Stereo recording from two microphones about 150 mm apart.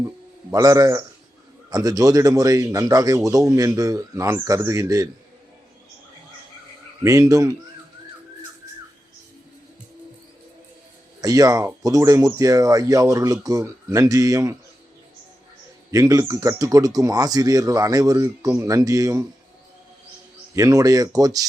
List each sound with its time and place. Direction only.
0.5 s speech: 25° right (ahead or behind)
7.0 s speech: 20° right (ahead or behind)
11.2 s speech: 25° right (ahead or behind)
15.9 s speech: 20° right (ahead or behind)
20.6 s speech: 20° right (ahead or behind)